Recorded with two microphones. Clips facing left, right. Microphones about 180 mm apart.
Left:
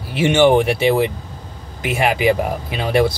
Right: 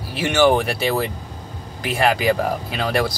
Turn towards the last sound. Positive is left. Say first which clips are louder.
# left 4 dB
turn(degrees=20)  # may be behind; listen again after turning